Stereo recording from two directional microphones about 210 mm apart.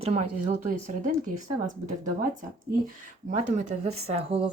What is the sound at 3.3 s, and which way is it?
Speech, 35° right (ahead or behind).